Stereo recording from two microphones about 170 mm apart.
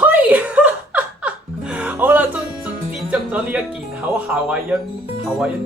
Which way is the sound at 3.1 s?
10° right (ahead or behind).